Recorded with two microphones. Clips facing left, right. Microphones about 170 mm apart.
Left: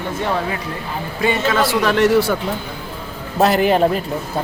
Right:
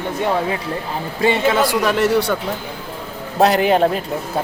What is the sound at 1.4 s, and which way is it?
Speech, 15° right (ahead or behind).